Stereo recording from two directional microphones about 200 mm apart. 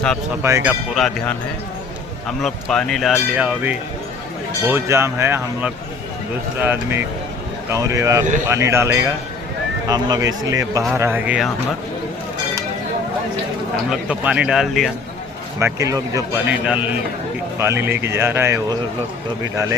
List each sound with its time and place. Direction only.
0.4 s a man's voice: 10° right (ahead or behind)
13.9 s speech: 5° right (ahead or behind)
15.5 s a man's voice: 15° right (ahead or behind)